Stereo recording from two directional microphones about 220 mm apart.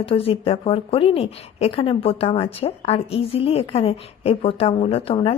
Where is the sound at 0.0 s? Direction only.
25° left (ahead or behind).